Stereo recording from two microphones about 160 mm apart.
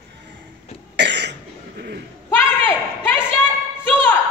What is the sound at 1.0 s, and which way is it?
Cough, 90° right.